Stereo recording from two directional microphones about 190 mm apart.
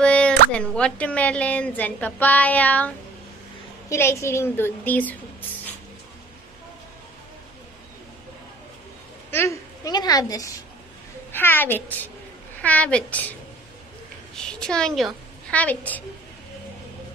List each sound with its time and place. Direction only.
0.0 s a sound: 5° left (ahead or behind)
0.6 s a woman's voice: 5° left (ahead or behind)
3.9 s a woman's voice: 15° left (ahead or behind)
9.3 s a child's voice: 15° left (ahead or behind)